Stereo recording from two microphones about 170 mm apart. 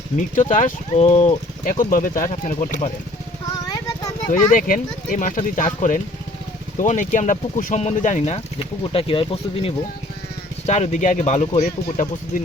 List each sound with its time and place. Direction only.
0.2 s speech: 50° left (ahead or behind)
3.5 s a sound: 20° left (ahead or behind)
4.5 s speech: 55° left (ahead or behind); by 11.7 s 40° left (ahead or behind)
11.9 s speech: 55° left (ahead or behind)